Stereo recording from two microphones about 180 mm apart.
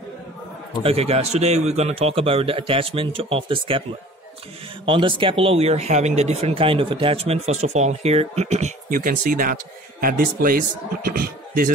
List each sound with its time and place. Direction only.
0.8 s speech: 35° right (ahead or behind)
4.8 s speech: 30° right (ahead or behind); by 11.7 s 55° right (ahead or behind)